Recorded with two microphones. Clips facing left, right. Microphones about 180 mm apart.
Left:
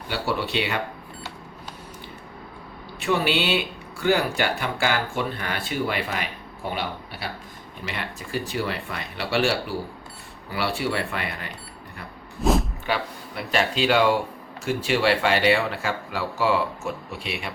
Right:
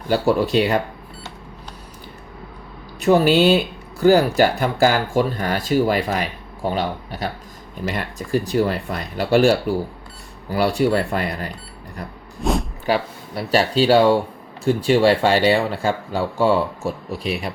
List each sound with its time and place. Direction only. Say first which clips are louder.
0.1 s speech: right 9 dB; 40° right (ahead or behind)
3.0 s speech: right 9 dB; 40° right (ahead or behind)
12.4 s a sound: even; centre (ahead or behind)
12.8 s speech: right 6 dB; 35° right (ahead or behind)